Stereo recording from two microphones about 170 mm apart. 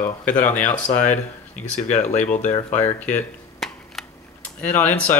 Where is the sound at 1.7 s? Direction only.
45° left (ahead or behind).